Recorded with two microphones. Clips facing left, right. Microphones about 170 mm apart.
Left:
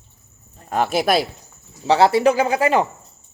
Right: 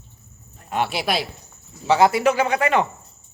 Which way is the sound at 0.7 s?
45° left (ahead or behind).